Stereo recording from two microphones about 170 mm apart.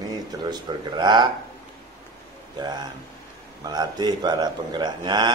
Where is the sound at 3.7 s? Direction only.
25° right (ahead or behind).